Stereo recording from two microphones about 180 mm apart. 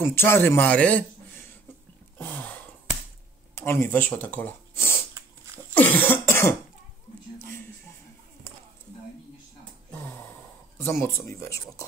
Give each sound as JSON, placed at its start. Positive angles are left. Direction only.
{"t": 0.0, "sound": "a man's voice", "side_deg": 10}
{"t": 2.1, "sound": "a sound", "side_deg": 10}
{"t": 3.5, "sound": "speech", "side_deg": 15}
{"t": 5.8, "sound": "cough", "side_deg": 10}
{"t": 9.8, "sound": "a sound", "side_deg": 10}
{"t": 10.8, "sound": "speech", "side_deg": 15}